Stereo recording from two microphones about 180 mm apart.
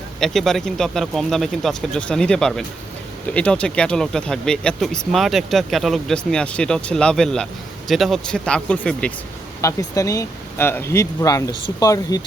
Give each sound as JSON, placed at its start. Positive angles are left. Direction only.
{"t": 0.2, "sound": "speech", "side_deg": 0}
{"t": 9.6, "sound": "speech", "side_deg": 15}